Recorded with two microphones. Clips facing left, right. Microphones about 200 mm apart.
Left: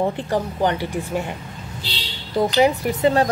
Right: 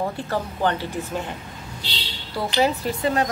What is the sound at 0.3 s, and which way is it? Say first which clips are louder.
Speech: left 3 dB; 15° left (ahead or behind).